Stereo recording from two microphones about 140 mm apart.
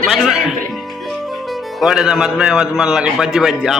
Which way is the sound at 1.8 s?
5° right (ahead or behind).